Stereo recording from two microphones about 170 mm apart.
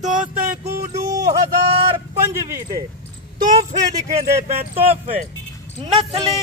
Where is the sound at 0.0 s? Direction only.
50° right (ahead or behind).